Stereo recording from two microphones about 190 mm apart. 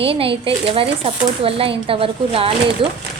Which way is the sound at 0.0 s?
30° right (ahead or behind).